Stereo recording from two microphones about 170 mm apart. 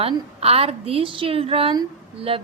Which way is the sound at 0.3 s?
35° right (ahead or behind).